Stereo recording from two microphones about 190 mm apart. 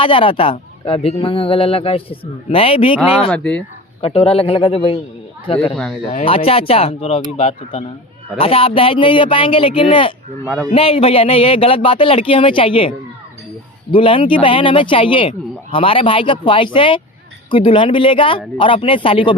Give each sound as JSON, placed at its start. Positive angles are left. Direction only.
{"t": 0.0, "sound": "speech", "side_deg": 25}
{"t": 3.2, "sound": "speech", "side_deg": 5}
{"t": 4.0, "sound": "speech", "side_deg": 30}
{"t": 5.7, "sound": "speech", "side_deg": 0}
{"t": 6.1, "sound": "speech", "side_deg": 30}
{"t": 13.9, "sound": "speech", "side_deg": 25}